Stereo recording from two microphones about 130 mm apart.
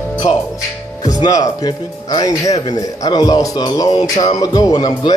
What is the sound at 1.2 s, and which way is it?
Speech, 30° left (ahead or behind).